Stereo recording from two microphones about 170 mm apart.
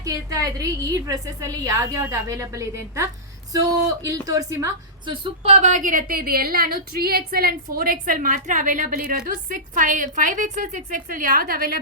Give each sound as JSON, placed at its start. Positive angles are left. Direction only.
{"t": 0.0, "sound": "a woman's voice", "side_deg": -20}
{"t": 5.0, "sound": "a woman's voice", "side_deg": -35}